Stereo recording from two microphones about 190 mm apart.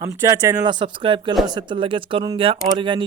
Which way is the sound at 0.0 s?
15° right (ahead or behind).